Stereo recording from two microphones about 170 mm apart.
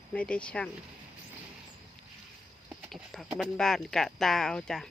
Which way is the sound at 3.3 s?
Centre (ahead or behind).